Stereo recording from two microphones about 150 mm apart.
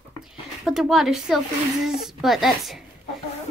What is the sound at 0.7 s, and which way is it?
Speech, centre (ahead or behind).